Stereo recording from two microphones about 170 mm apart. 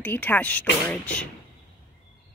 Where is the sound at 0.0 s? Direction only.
10° left (ahead or behind).